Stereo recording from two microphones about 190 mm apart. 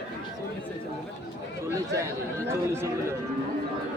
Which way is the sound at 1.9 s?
15° right (ahead or behind).